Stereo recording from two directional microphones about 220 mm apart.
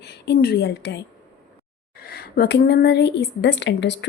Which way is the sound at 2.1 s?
45° left (ahead or behind).